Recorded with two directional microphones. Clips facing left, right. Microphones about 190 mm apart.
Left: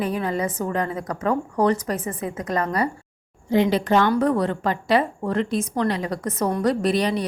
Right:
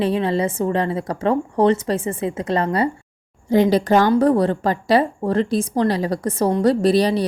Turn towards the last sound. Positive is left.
turn(degrees=-35)  # may be behind; listen again after turning